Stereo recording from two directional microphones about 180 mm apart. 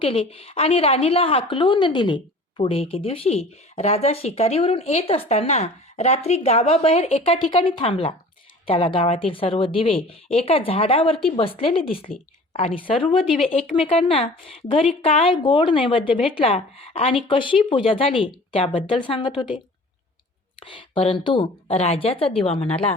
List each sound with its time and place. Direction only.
0.0 s a woman's voice: 30° left (ahead or behind)
20.7 s a woman's voice: 30° left (ahead or behind)